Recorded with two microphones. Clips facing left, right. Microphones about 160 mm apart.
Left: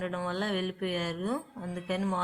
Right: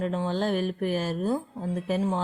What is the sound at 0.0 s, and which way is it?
A woman's voice, 30° right (ahead or behind).